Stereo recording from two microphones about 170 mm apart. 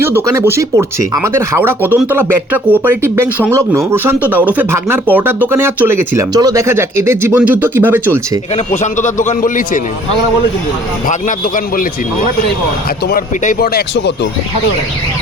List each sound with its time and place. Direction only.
0.0 s speech: 15° right (ahead or behind)
8.8 s a man's voice: 45° left (ahead or behind)
11.1 s a man's voice: 50° left (ahead or behind)
13.1 s speech: 55° left (ahead or behind); by 14.1 s 80° left